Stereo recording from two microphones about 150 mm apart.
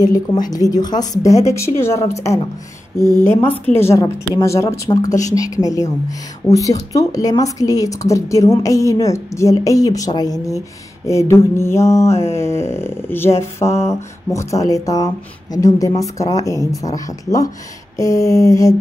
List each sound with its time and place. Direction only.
0.0 s a woman's voice: 25° left (ahead or behind)